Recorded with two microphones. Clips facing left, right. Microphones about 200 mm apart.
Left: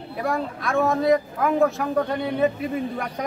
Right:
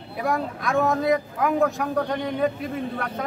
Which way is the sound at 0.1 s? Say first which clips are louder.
Even; centre (ahead or behind).